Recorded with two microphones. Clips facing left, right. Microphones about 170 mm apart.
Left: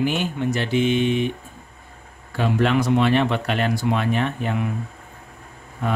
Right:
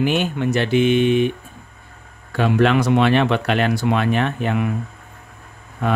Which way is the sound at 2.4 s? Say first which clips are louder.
Right 3 dB; 75° right (ahead or behind).